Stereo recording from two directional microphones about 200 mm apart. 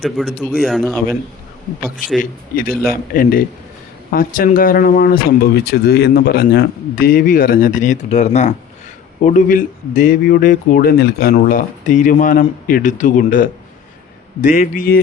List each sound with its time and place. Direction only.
0.0 s speech: centre (ahead or behind)
2.1 s speech: 45° left (ahead or behind)